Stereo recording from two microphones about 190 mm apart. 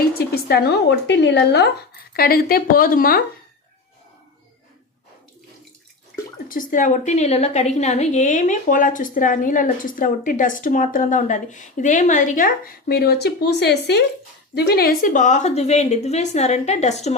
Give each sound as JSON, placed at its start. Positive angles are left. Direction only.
{"t": 0.2, "sound": "a woman's voice", "side_deg": 55}
{"t": 6.5, "sound": "a woman's voice", "side_deg": 45}